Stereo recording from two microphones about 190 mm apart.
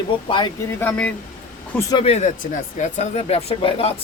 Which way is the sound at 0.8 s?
10° left (ahead or behind).